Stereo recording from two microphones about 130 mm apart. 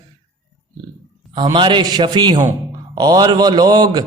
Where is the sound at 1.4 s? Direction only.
35° right (ahead or behind).